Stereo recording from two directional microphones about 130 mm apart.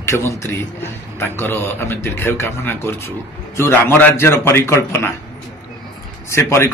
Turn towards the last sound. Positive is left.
turn(degrees=20)  # may be behind; listen again after turning